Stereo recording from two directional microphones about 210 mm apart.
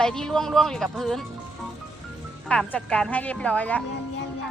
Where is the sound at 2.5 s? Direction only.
5° left (ahead or behind).